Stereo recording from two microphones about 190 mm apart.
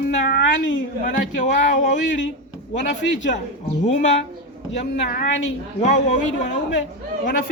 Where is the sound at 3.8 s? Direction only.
40° left (ahead or behind).